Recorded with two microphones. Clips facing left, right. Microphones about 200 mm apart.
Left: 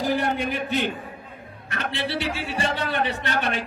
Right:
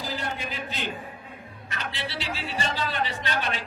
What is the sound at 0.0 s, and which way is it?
A man's voice, 60° left (ahead or behind).